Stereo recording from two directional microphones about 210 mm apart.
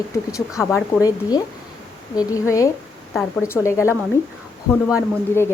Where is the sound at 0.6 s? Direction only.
10° left (ahead or behind).